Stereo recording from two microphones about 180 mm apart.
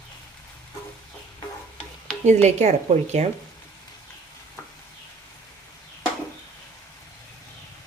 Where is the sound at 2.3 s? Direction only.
40° right (ahead or behind).